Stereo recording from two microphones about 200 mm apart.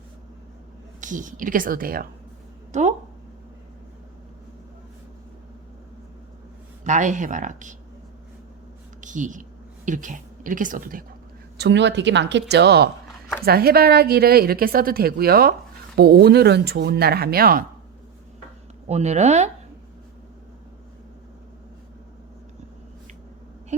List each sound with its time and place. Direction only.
1.0 s a woman's voice: 40° right (ahead or behind)
2.7 s a sound: 35° right (ahead or behind)
6.8 s speech: 40° right (ahead or behind)
9.0 s a sound: 40° right (ahead or behind)
9.8 s a woman's voice: 40° right (ahead or behind)
11.5 s a woman's voice: 55° right (ahead or behind)
18.9 s speech: 35° right (ahead or behind)